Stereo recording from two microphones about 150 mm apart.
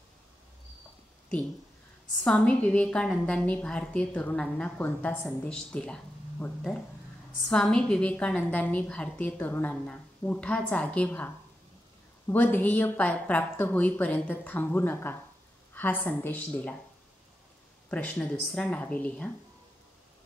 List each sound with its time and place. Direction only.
2.2 s a woman's voice: 5° left (ahead or behind)
17.8 s a woman's voice: 10° left (ahead or behind)